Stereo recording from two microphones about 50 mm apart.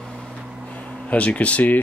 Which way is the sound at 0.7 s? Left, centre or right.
Left.